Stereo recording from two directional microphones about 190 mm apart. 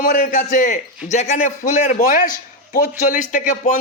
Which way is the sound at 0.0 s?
45° left (ahead or behind).